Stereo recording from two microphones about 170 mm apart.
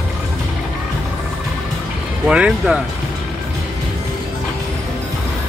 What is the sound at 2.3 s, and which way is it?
Speech, 5° right (ahead or behind).